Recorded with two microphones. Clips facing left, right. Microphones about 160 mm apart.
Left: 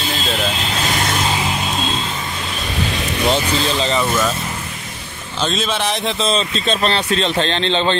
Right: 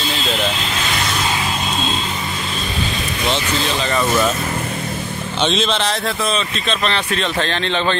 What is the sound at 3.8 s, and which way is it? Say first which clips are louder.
Speech: even; 25° left (ahead or behind).